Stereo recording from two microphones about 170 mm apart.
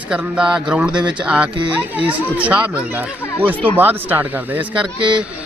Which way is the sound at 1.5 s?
30° right (ahead or behind).